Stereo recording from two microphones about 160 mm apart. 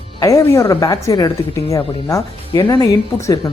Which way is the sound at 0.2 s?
20° left (ahead or behind).